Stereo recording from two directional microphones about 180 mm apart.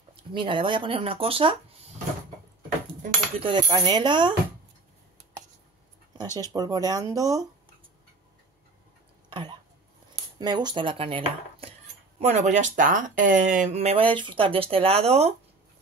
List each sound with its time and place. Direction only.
0.1 s speech: 25° right (ahead or behind)
3.3 s speech: 25° right (ahead or behind)
6.5 s speech: 20° right (ahead or behind)
9.3 s a sound: 25° right (ahead or behind)
10.4 s speech: 25° right (ahead or behind)